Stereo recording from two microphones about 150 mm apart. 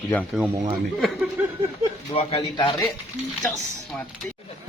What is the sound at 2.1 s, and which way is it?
Speech, 40° left (ahead or behind).